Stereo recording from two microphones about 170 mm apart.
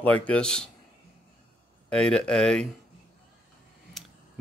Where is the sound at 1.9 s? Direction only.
5° left (ahead or behind).